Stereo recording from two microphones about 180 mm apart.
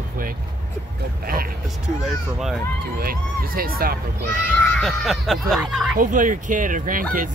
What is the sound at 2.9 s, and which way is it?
Speech, 55° right (ahead or behind).